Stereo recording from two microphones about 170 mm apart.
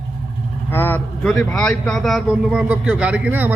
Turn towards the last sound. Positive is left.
turn(degrees=-10)  # may be behind; listen again after turning